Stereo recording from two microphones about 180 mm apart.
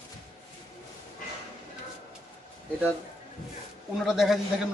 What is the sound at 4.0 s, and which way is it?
Speech, centre (ahead or behind).